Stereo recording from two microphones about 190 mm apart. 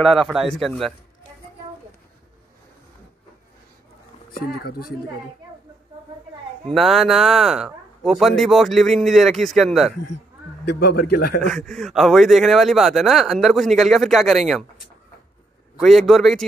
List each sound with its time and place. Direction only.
0.0 s speech: centre (ahead or behind)
4.3 s speech: 55° left (ahead or behind)
6.7 s speech: centre (ahead or behind)
10.6 s a man's voice: 60° left (ahead or behind)
11.4 s speech: centre (ahead or behind)
15.8 s speech: centre (ahead or behind)